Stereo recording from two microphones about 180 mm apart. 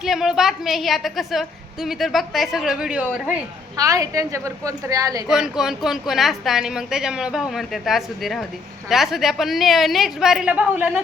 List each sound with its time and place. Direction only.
0.0 s a woman's voice: centre (ahead or behind)
3.8 s a woman's voice: 20° right (ahead or behind)
5.3 s a woman's voice: 5° right (ahead or behind)